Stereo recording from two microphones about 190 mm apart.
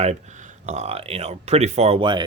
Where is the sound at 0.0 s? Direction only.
40° right (ahead or behind).